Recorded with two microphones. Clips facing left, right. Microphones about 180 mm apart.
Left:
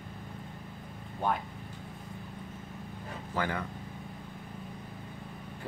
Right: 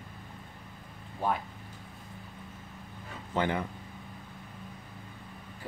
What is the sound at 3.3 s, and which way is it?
Speech, 20° right (ahead or behind).